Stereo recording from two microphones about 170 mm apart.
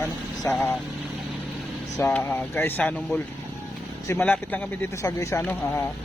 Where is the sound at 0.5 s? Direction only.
15° left (ahead or behind).